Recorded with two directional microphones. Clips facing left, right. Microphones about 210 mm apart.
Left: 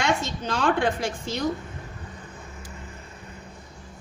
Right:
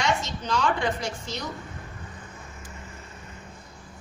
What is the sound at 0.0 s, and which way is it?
A woman's voice, 50° left (ahead or behind).